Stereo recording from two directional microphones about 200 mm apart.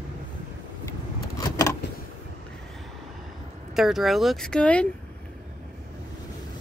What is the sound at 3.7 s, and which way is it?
Speech, centre (ahead or behind).